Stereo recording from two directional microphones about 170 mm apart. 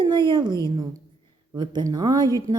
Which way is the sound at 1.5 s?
25° right (ahead or behind).